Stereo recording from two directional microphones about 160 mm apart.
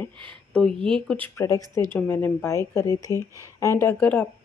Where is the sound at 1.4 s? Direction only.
20° left (ahead or behind).